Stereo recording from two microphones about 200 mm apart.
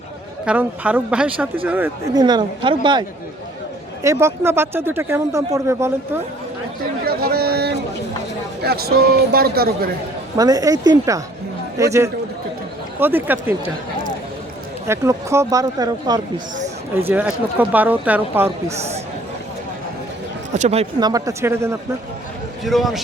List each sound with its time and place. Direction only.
0.4 s speech: 5° right (ahead or behind)
2.2 s speech: 20° right (ahead or behind)
4.0 s speech: 15° right (ahead or behind)
7.0 s a sound: 50° right (ahead or behind)
8.6 s speech: 50° right (ahead or behind)
10.3 s speech: 20° right (ahead or behind)
14.8 s speech: 15° right (ahead or behind)
20.5 s speech: 35° right (ahead or behind)
21.0 s speech: 20° right (ahead or behind)
22.6 s a man's voice: centre (ahead or behind)